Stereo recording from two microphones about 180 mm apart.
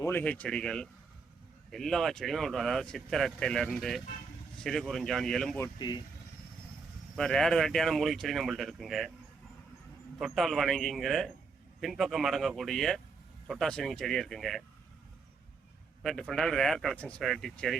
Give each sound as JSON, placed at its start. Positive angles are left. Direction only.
{"t": 0.0, "sound": "speech", "side_deg": 10}
{"t": 5.5, "sound": "speech", "side_deg": 20}
{"t": 7.2, "sound": "speech", "side_deg": 5}
{"t": 10.2, "sound": "speech", "side_deg": 0}
{"t": 16.0, "sound": "speech", "side_deg": 0}